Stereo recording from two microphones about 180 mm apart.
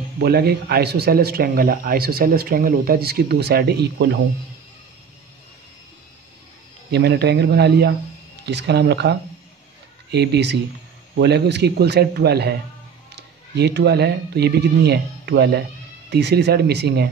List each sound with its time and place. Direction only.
0.2 s speech: 60° right (ahead or behind)
6.9 s speech: 65° right (ahead or behind)
10.1 s speech: 65° right (ahead or behind)